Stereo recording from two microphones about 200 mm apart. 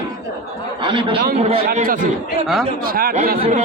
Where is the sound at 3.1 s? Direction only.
40° right (ahead or behind).